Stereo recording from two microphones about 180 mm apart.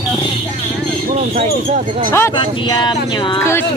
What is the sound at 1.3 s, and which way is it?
Speech, 40° right (ahead or behind).